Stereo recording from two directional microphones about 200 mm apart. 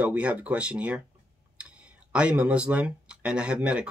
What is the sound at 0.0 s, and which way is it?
Speech, 5° right (ahead or behind).